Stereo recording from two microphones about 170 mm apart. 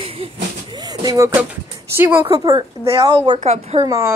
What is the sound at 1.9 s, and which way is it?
A woman's voice, 10° right (ahead or behind).